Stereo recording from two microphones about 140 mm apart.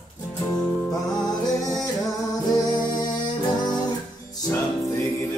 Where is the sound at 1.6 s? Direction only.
25° left (ahead or behind).